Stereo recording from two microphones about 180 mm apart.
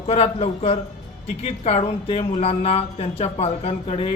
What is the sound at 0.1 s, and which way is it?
Speech, 35° left (ahead or behind).